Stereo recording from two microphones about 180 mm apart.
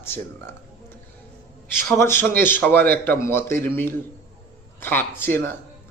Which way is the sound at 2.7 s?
55° right (ahead or behind).